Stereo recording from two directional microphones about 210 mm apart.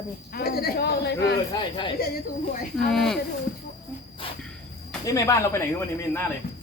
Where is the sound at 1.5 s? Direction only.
20° left (ahead or behind).